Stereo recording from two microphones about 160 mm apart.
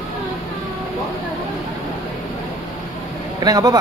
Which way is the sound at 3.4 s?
25° right (ahead or behind).